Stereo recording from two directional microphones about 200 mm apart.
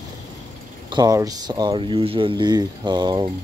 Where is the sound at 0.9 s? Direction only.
20° right (ahead or behind).